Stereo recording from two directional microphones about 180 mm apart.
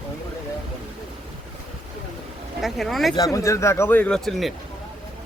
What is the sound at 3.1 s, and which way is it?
Speech, 20° left (ahead or behind).